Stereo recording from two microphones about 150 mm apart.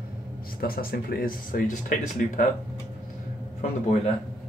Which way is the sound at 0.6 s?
80° left.